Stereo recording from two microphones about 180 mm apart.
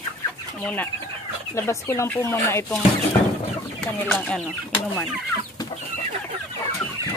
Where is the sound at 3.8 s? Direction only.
5° left (ahead or behind).